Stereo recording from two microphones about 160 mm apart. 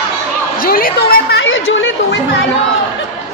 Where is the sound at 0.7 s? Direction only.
75° left (ahead or behind).